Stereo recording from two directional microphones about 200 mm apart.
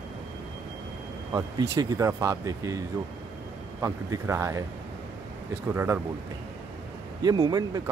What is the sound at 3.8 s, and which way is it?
Speech, 15° right (ahead or behind).